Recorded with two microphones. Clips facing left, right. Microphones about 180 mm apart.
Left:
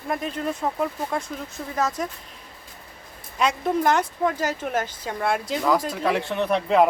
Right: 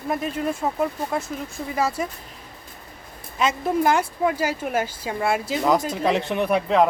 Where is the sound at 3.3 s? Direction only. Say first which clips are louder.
Right 1 dB; 5° right (ahead or behind).